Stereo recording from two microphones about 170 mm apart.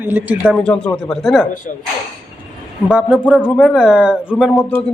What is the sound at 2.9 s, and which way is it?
Speech, centre (ahead or behind).